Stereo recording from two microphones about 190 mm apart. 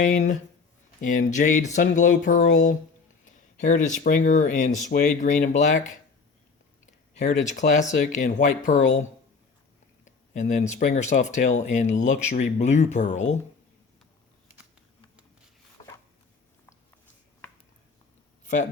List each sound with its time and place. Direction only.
0.0 s speech: 40° left (ahead or behind)
7.1 s speech: 40° left (ahead or behind)
18.4 s speech: 40° left (ahead or behind)